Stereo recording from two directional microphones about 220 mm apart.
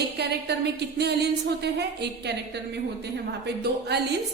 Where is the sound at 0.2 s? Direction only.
50° right (ahead or behind).